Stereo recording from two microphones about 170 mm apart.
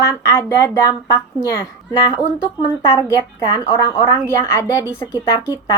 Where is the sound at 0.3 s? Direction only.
20° left (ahead or behind).